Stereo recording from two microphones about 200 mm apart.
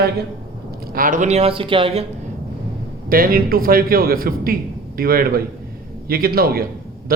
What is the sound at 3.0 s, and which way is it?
A man's voice, 45° right (ahead or behind).